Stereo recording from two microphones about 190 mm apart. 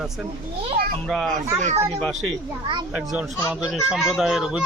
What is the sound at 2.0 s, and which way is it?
Speech, 5° left (ahead or behind).